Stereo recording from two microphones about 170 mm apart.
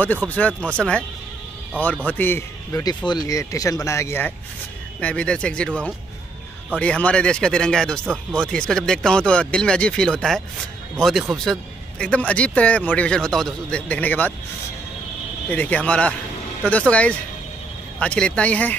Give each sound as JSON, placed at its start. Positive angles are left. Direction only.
{"t": 0.3, "sound": "a man's voice", "side_deg": 10}
{"t": 2.0, "sound": "a man's voice", "side_deg": 10}
{"t": 15.5, "sound": "a man's voice", "side_deg": 10}